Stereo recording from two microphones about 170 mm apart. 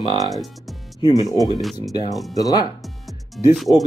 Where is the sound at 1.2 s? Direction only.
20° right (ahead or behind).